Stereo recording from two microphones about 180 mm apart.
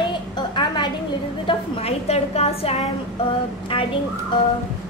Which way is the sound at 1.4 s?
35° left (ahead or behind).